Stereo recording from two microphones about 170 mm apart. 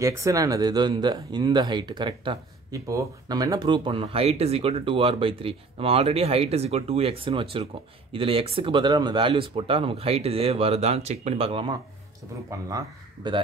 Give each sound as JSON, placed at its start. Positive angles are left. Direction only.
{"t": 0.0, "sound": "speech", "side_deg": -20}